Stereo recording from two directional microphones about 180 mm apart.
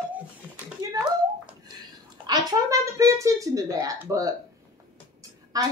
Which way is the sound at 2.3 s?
20° right (ahead or behind).